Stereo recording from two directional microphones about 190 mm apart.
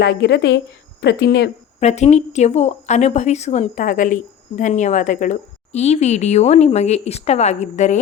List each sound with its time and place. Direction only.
0.0 s a woman's voice: 60° left (ahead or behind)
1.8 s a woman's voice: 35° left (ahead or behind)